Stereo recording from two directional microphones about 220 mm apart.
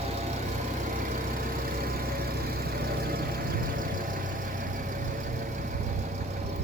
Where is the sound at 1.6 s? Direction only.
40° right (ahead or behind).